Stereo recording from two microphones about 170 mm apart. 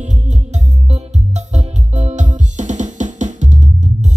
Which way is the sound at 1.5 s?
45° right (ahead or behind).